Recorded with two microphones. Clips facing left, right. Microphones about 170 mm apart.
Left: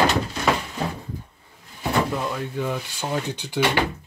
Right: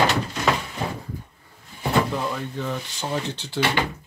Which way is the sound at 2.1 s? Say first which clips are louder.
Left 1 dB; 5° left (ahead or behind).